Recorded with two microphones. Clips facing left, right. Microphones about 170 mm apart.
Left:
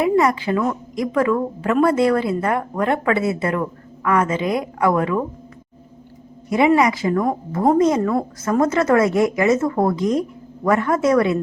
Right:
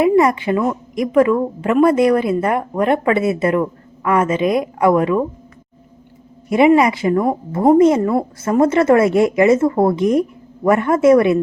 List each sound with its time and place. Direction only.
0.0 s a woman's voice: 20° right (ahead or behind)
6.5 s a woman's voice: 25° right (ahead or behind)